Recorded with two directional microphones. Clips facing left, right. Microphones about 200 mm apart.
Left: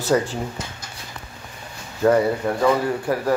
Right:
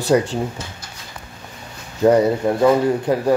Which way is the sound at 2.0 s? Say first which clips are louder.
Right 3 dB; 20° right (ahead or behind).